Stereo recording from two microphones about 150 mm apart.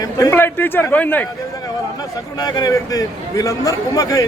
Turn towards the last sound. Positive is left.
turn(degrees=25)  # may be behind; listen again after turning